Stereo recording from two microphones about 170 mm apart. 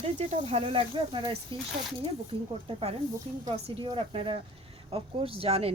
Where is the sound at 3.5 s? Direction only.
30° right (ahead or behind).